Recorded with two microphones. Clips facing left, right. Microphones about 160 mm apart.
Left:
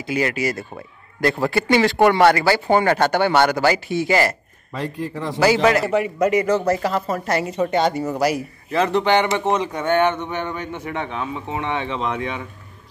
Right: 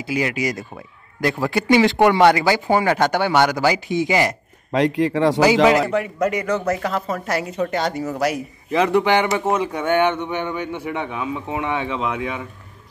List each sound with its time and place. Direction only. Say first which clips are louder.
0.0 s speech: even; 10° right (ahead or behind)
4.7 s speech: right 9 dB; 85° right
5.4 s speech: even; 15° right (ahead or behind)
5.9 s a woman's voice: left 2 dB; 5° left (ahead or behind)
8.7 s speech: right 1 dB; 10° right (ahead or behind)